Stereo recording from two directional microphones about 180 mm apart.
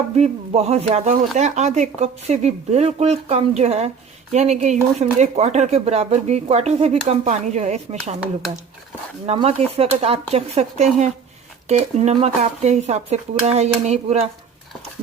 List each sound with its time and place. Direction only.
0.2 s speech: 35° right (ahead or behind)
9.2 s speech: 35° right (ahead or behind)